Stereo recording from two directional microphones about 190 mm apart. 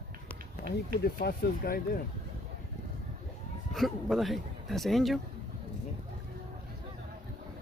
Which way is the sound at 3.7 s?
Centre (ahead or behind).